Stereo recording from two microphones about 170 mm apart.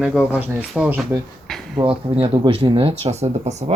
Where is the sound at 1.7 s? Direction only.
30° right (ahead or behind).